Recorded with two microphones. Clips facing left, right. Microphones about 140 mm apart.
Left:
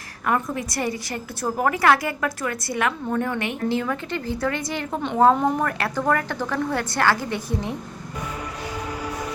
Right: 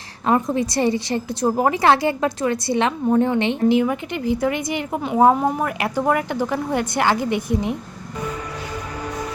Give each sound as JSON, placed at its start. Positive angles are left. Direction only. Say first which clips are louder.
{"t": 0.3, "sound": "a woman's voice", "louder": "right 5 dB", "side_deg": -25}